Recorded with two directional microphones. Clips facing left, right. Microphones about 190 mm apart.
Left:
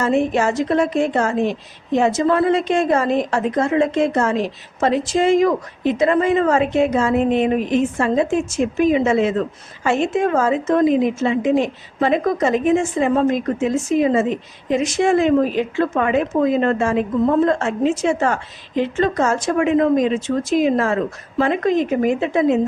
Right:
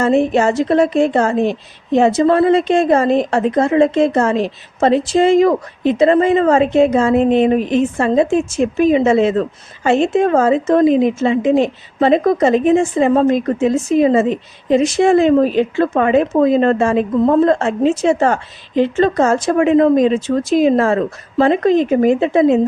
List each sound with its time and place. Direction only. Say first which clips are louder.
0.0 s a woman's voice: right 4 dB; 30° right (ahead or behind)